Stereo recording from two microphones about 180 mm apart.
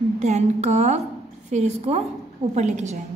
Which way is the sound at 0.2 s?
35° right (ahead or behind).